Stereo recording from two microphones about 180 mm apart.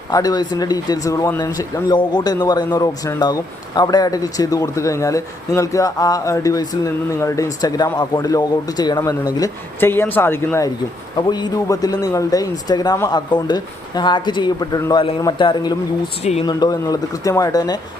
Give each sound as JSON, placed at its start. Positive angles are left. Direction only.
{"t": 0.1, "sound": "speech", "side_deg": 20}
{"t": 11.2, "sound": "speech", "side_deg": 25}